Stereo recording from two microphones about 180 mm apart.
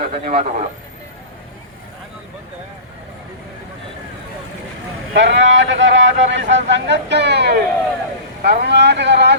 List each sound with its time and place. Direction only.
0.0 s speech: 35° right (ahead or behind)
5.1 s speech: 80° right